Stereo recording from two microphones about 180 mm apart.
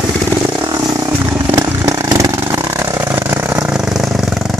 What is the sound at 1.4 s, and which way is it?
Chainsaw, 15° right (ahead or behind).